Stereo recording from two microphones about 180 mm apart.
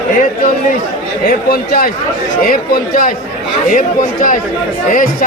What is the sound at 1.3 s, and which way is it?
A man's voice, 55° left (ahead or behind).